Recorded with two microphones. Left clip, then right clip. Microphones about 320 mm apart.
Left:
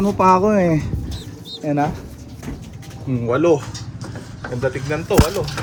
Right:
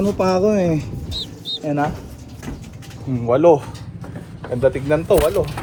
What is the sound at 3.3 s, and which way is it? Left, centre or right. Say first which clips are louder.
Speech: right 3 dB; centre.